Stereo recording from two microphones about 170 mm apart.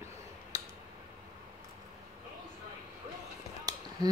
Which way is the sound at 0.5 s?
20° right (ahead or behind).